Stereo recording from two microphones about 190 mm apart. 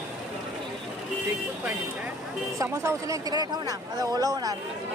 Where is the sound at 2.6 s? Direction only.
15° right (ahead or behind).